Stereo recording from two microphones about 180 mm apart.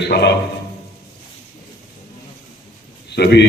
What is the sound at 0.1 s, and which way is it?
Speech, 70° left (ahead or behind).